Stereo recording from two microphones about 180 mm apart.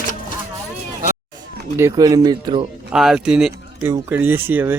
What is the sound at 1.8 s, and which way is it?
Speech, 20° right (ahead or behind).